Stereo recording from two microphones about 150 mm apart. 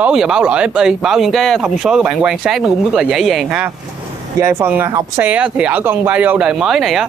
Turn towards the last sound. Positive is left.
turn(degrees=-5)  # may be behind; listen again after turning